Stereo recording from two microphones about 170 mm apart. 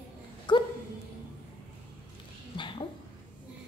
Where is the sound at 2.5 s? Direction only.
30° left (ahead or behind).